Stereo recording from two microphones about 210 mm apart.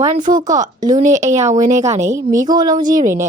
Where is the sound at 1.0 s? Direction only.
35° right (ahead or behind).